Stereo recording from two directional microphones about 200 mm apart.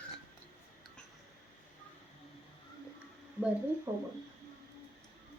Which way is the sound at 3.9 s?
10° right (ahead or behind).